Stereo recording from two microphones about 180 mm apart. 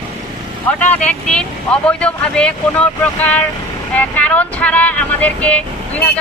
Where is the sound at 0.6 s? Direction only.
10° left (ahead or behind).